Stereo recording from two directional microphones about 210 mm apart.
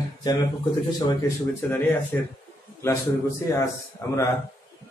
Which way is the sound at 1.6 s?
5° left (ahead or behind).